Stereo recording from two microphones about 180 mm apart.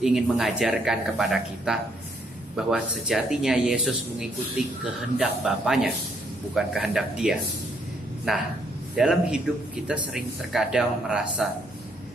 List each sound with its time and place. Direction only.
0.0 s speech: centre (ahead or behind)